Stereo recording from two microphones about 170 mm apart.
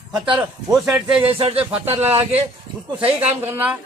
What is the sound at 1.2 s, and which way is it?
Speech, 35° right (ahead or behind).